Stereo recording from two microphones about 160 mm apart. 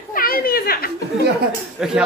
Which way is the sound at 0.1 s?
65° left (ahead or behind).